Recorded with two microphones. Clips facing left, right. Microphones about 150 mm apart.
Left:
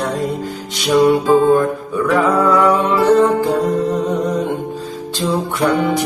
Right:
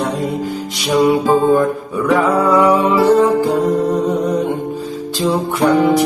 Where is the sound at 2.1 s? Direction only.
5° right (ahead or behind).